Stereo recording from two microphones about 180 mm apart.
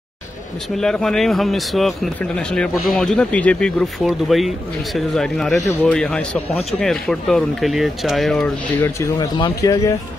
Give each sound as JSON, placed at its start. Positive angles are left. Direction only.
{"t": 0.7, "sound": "speech", "side_deg": 5}
{"t": 8.8, "sound": "speech", "side_deg": 20}